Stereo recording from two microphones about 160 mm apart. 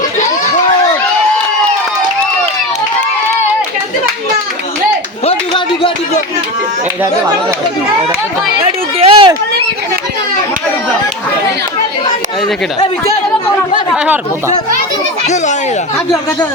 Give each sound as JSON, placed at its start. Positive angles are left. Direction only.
{"t": 5.2, "sound": "clapping", "side_deg": 35}
{"t": 9.0, "sound": "a sound", "side_deg": -35}
{"t": 13.9, "sound": "speech", "side_deg": -10}